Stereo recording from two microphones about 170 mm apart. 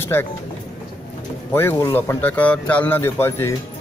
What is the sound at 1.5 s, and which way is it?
A man's voice, 15° left (ahead or behind).